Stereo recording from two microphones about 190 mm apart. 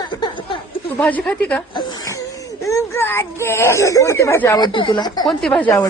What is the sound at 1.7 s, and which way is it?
Speech, 20° left (ahead or behind).